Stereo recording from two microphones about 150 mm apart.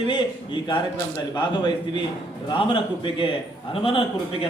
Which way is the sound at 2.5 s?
35° left (ahead or behind).